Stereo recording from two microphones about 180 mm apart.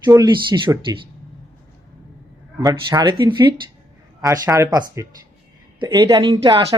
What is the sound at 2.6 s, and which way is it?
Speech, 20° right (ahead or behind).